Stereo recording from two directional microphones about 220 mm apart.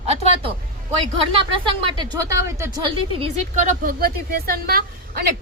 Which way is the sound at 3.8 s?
40° right (ahead or behind).